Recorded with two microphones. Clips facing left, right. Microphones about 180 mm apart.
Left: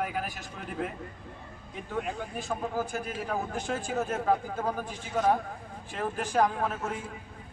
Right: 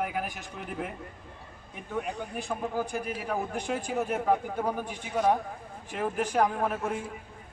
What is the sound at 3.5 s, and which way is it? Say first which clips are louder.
A man's voice: right 1 dB; 15° right (ahead or behind).